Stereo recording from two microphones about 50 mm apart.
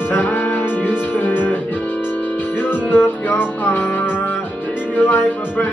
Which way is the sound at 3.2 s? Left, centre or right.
Left.